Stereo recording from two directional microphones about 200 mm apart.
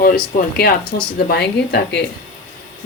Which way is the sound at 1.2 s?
55° left (ahead or behind).